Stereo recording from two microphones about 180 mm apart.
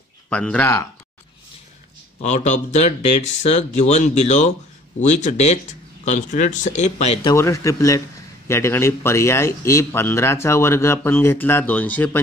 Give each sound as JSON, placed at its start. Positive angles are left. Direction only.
{"t": 0.3, "sound": "a man's voice", "side_deg": 5}
{"t": 2.2, "sound": "speech", "side_deg": 40}
{"t": 7.2, "sound": "a man's voice", "side_deg": 15}